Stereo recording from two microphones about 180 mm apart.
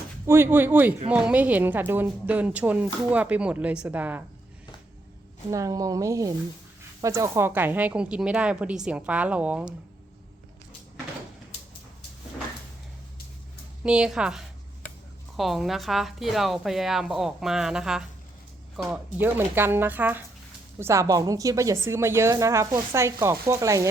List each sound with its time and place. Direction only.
0.3 s speech: 15° right (ahead or behind)
5.5 s speech: 20° right (ahead or behind)
13.8 s a woman's voice: 5° right (ahead or behind)